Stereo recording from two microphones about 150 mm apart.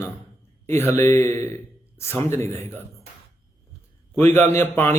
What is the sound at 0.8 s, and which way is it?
A man's voice, 15° left (ahead or behind).